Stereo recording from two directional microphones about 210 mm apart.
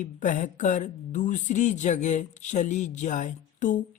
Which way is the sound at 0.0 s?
35° left (ahead or behind).